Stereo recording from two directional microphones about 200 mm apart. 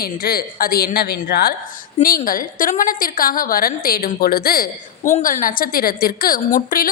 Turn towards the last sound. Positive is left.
turn(degrees=45)  # may be behind; listen again after turning